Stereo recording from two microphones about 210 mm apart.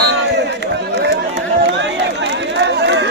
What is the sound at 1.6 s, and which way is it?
Run, 55° right (ahead or behind).